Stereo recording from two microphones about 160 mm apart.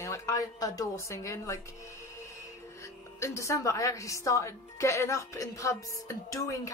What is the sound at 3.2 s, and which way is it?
A man's voice, 20° left (ahead or behind).